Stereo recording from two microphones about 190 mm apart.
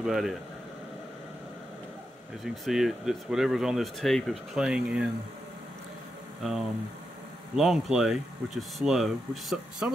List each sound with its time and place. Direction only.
0.0 s speech: centre (ahead or behind)
2.4 s speech: centre (ahead or behind)
6.4 s speech: 5° right (ahead or behind)